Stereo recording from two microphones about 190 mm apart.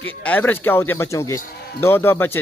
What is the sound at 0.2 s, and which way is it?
Speech, 10° left (ahead or behind).